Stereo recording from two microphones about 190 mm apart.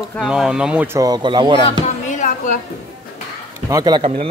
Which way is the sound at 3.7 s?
20° right (ahead or behind).